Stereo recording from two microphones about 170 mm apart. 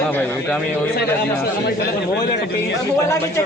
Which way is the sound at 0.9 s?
70° left (ahead or behind).